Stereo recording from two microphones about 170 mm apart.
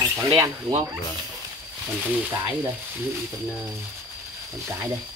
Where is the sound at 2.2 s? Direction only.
10° right (ahead or behind).